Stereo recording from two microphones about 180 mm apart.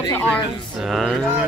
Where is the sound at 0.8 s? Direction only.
Centre (ahead or behind).